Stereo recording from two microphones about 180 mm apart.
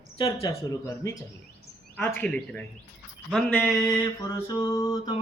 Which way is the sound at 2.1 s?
5° left (ahead or behind).